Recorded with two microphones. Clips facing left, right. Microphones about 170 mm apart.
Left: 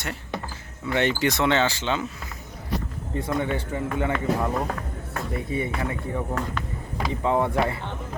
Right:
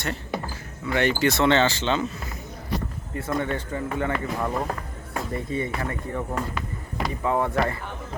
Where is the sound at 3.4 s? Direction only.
10° left (ahead or behind).